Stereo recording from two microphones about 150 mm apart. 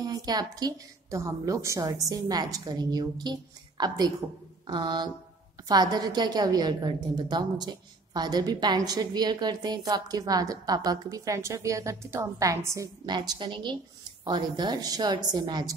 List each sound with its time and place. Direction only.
0.0 s a woman's voice: 25° right (ahead or behind)